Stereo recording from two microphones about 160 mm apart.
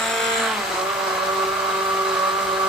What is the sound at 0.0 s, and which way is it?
Vehicle, centre (ahead or behind).